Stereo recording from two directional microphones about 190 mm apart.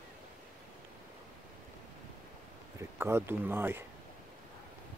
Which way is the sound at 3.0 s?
10° right (ahead or behind).